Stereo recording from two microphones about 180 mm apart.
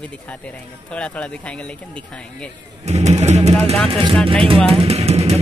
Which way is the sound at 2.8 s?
35° right (ahead or behind).